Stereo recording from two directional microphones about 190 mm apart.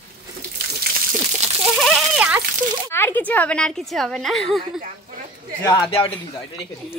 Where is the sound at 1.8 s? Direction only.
Centre (ahead or behind).